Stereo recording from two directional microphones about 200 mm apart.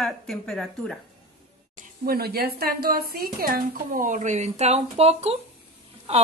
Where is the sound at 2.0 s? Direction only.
50° right (ahead or behind).